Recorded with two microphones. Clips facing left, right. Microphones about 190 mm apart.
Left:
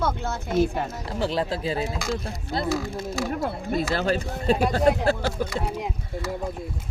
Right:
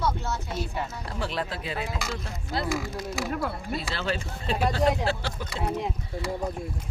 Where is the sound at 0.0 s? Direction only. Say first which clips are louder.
Left 2 dB; 55° left (ahead or behind).